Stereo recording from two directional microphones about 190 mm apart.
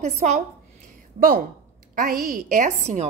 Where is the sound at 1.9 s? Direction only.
50° right (ahead or behind).